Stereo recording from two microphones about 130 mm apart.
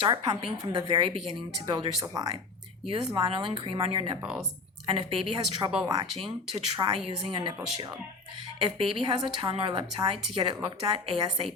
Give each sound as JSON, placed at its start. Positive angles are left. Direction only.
{"t": 0.0, "sound": "a woman's voice", "side_deg": -40}
{"t": 3.2, "sound": "a woman's voice", "side_deg": -40}
{"t": 4.2, "sound": "speech", "side_deg": -5}
{"t": 4.9, "sound": "a woman's voice", "side_deg": -40}
{"t": 5.8, "sound": "a woman's voice", "side_deg": -30}